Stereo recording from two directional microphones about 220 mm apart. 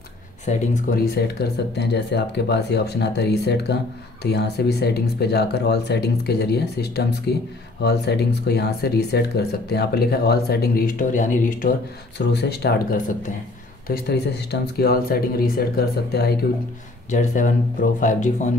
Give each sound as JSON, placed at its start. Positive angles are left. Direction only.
{"t": 0.5, "sound": "speech", "side_deg": 40}
{"t": 12.2, "sound": "speech", "side_deg": 50}
{"t": 17.1, "sound": "speech", "side_deg": 35}